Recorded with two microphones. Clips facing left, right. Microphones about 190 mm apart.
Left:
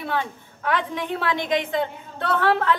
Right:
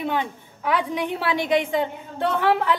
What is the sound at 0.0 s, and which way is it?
A woman's voice, 15° right (ahead or behind).